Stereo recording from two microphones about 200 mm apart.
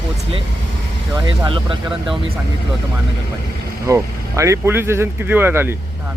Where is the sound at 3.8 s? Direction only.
15° right (ahead or behind).